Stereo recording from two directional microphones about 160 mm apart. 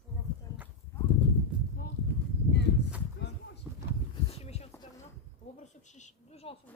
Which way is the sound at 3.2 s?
90° left.